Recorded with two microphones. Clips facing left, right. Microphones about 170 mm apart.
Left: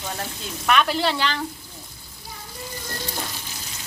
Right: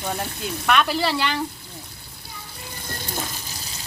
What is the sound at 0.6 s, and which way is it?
Speech, centre (ahead or behind).